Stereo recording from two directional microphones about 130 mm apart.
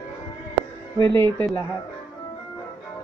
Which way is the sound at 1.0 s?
15° left (ahead or behind).